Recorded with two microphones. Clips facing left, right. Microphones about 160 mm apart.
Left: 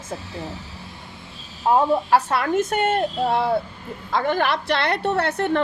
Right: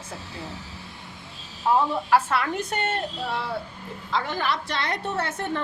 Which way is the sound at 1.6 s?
45° left (ahead or behind).